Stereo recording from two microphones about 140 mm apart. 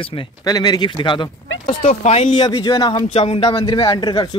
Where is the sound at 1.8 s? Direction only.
50° left (ahead or behind).